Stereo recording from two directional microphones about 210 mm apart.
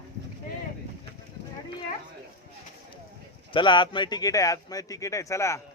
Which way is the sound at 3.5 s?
20° left (ahead or behind).